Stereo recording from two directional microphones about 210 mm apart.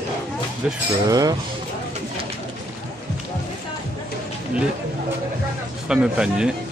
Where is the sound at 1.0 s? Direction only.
15° right (ahead or behind).